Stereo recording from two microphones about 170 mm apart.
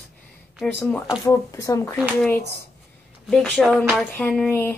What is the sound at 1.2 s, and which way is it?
Speech, 20° left (ahead or behind).